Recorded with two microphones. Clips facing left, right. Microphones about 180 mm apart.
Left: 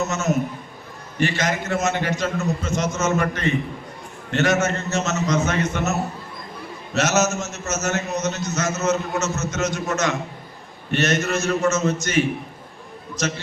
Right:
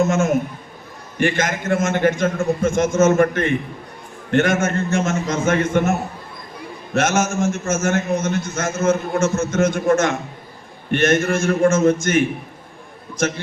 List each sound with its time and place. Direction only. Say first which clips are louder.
0.0 s a man's voice: right 5 dB; 50° right (ahead or behind)